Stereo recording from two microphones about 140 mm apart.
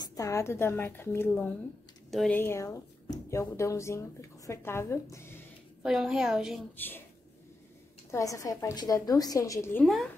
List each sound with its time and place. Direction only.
0.0 s a woman's voice: 25° left (ahead or behind)
2.0 s a sound: centre (ahead or behind)
2.3 s speech: 15° left (ahead or behind)
5.8 s a woman's voice: 5° right (ahead or behind)
8.1 s a woman's voice: 20° left (ahead or behind)